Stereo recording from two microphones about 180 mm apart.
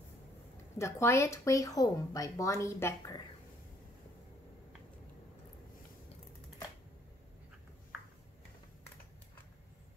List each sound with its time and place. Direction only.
0.7 s speech: 15° left (ahead or behind)